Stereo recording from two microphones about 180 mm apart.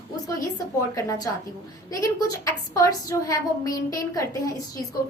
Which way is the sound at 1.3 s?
15° left (ahead or behind).